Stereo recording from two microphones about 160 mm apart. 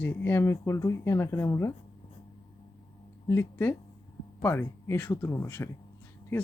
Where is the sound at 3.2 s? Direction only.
15° left (ahead or behind).